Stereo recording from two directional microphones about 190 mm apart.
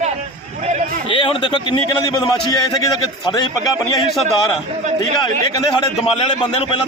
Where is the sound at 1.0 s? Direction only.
25° left (ahead or behind).